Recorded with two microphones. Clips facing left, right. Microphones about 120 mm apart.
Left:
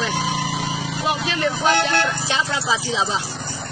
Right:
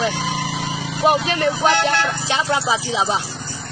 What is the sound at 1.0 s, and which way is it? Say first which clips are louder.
Speech: right 6 dB; 45° right (ahead or behind).